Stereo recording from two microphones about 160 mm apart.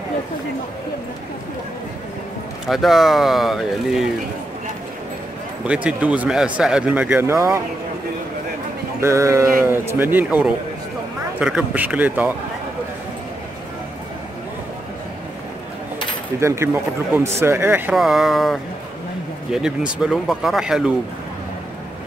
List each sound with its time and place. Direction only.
2.6 s speech: centre (ahead or behind)
5.7 s speech: 5° right (ahead or behind)
9.0 s speech: 20° right (ahead or behind)
16.3 s speech: 15° right (ahead or behind)
17.9 s speech: centre (ahead or behind)